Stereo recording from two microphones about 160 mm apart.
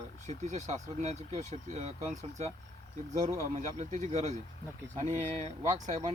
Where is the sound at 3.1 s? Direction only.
45° right (ahead or behind).